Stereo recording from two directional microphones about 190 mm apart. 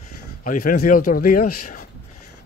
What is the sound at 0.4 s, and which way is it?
Speech, 45° left (ahead or behind).